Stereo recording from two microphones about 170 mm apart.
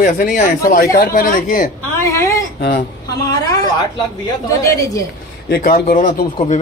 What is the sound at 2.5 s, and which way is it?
Speech, 60° left (ahead or behind).